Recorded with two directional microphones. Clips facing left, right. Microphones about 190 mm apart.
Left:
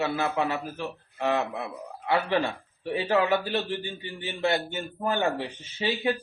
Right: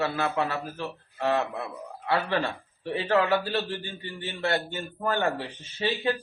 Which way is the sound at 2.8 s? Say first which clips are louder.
Even; 15° left (ahead or behind).